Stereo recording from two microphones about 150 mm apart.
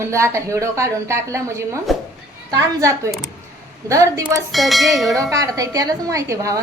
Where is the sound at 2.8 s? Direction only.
20° right (ahead or behind).